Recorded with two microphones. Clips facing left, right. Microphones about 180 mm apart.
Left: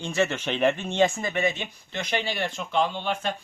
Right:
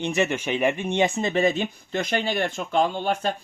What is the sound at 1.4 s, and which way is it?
Speech, 45° right (ahead or behind).